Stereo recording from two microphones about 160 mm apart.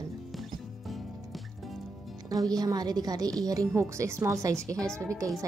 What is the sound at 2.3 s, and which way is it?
A woman's voice, 25° right (ahead or behind).